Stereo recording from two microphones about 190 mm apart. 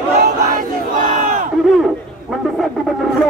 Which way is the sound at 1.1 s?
40° right (ahead or behind).